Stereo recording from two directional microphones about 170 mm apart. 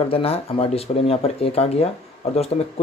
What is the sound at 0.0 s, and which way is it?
Speech, 35° left (ahead or behind).